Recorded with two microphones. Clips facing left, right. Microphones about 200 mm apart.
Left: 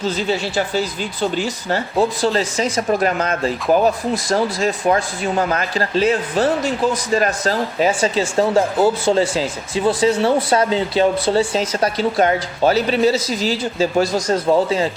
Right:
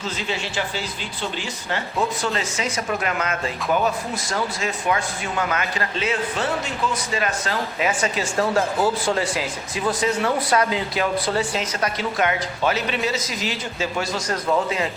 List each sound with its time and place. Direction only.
0.0 s speech: 40° left (ahead or behind)